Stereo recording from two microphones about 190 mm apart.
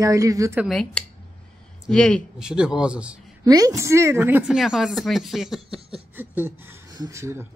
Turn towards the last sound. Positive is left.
turn(degrees=-15)  # may be behind; listen again after turning